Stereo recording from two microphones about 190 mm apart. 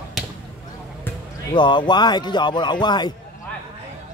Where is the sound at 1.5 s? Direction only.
25° left (ahead or behind).